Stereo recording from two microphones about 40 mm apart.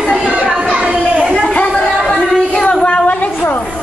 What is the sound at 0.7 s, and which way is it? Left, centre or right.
Chatter, right.